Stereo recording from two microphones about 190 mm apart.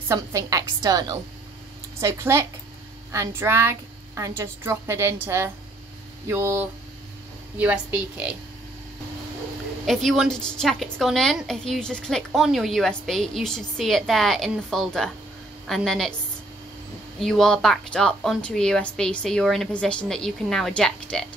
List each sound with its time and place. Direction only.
0.1 s a woman's voice: 15° right (ahead or behind)
9.8 s a woman's voice: centre (ahead or behind)
17.2 s a woman's voice: centre (ahead or behind)